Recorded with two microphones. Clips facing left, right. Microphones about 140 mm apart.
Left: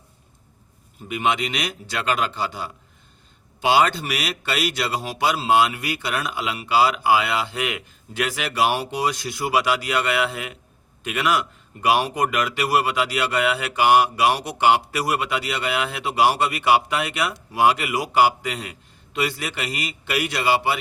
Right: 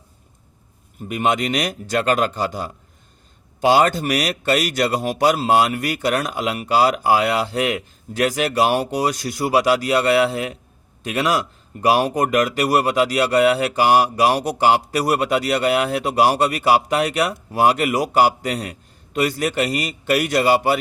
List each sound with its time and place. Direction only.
1.0 s a man's voice: 45° right (ahead or behind)